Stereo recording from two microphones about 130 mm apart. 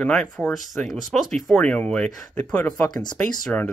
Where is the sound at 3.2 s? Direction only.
5° left (ahead or behind).